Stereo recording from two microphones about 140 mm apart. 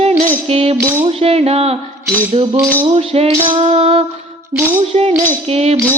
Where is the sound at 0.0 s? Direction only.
50° right (ahead or behind).